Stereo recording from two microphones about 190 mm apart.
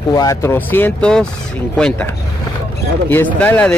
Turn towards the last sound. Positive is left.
turn(degrees=5)  # may be behind; listen again after turning